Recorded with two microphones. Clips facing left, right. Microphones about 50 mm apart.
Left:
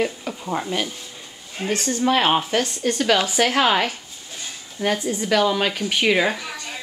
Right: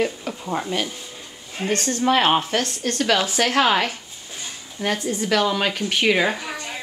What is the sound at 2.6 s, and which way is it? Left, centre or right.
Speech, centre.